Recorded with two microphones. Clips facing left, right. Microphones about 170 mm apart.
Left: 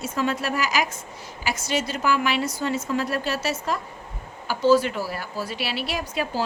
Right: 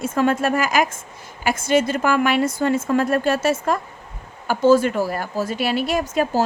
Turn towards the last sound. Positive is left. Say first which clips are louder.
# right 7 dB
turn(degrees=-45)  # may be behind; listen again after turning